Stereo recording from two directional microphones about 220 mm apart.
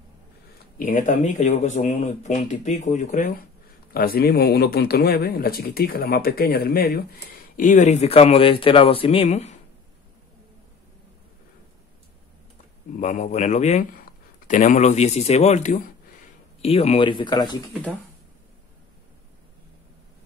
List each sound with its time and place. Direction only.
0.7 s speech: 35° left (ahead or behind)
13.0 s speech: 35° left (ahead or behind)